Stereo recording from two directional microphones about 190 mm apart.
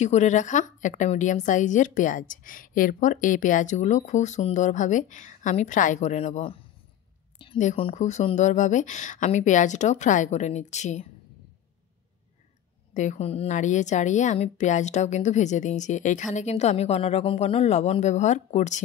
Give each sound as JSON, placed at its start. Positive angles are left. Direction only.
{"t": 0.0, "sound": "a woman's voice", "side_deg": 40}
{"t": 12.9, "sound": "a woman's voice", "side_deg": 40}